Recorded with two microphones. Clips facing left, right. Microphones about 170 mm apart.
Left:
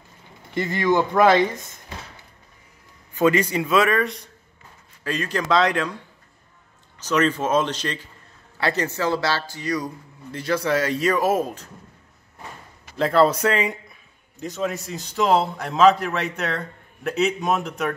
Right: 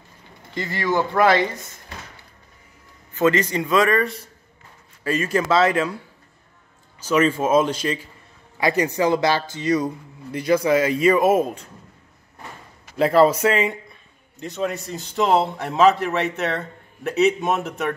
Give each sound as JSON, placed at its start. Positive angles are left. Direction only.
{"t": 0.6, "sound": "speech", "side_deg": 20}
{"t": 3.2, "sound": "a man's voice", "side_deg": 10}
{"t": 12.9, "sound": "a man's voice", "side_deg": -5}